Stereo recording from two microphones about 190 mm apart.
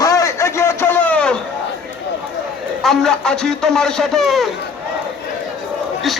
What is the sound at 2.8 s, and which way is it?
A man's voice, centre (ahead or behind).